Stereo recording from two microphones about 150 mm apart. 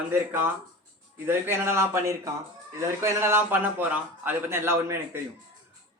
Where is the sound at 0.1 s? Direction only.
15° right (ahead or behind).